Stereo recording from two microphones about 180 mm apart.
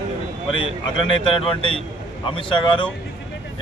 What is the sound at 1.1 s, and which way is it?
A man's voice, 30° left (ahead or behind).